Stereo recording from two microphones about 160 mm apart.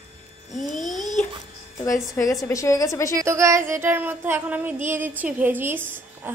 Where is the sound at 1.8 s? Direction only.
20° left (ahead or behind).